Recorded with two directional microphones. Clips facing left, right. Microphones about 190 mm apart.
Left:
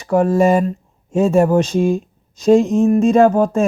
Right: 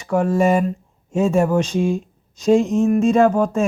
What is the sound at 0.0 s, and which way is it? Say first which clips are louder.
Speech: left 3 dB; 40° left (ahead or behind).